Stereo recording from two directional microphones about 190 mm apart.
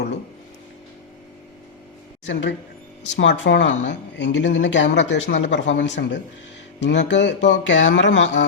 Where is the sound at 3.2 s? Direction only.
70° left (ahead or behind).